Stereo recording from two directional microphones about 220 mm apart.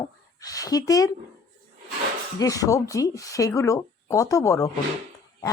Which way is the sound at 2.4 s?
15° left (ahead or behind).